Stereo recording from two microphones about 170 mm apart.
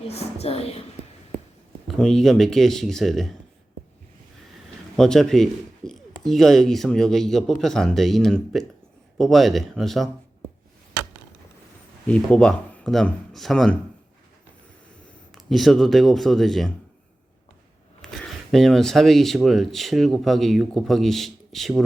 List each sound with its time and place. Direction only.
0.0 s speech: 40° left (ahead or behind)
2.0 s speech: centre (ahead or behind)
4.9 s speech: 5° left (ahead or behind)
12.0 s speech: 5° left (ahead or behind)
15.4 s speech: centre (ahead or behind)
18.0 s speech: 5° left (ahead or behind)